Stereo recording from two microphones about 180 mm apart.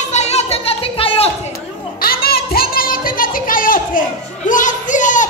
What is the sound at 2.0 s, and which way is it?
Music, 55° left (ahead or behind).